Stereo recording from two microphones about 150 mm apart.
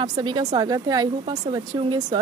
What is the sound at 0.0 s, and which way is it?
Speech, 30° right (ahead or behind).